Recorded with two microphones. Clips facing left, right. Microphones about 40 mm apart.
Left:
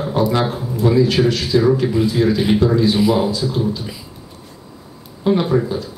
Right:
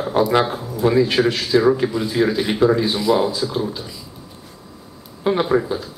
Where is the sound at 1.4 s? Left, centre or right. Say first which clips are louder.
Left 1 dB; centre.